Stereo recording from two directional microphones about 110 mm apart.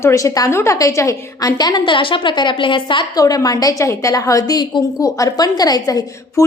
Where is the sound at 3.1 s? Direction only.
35° left (ahead or behind).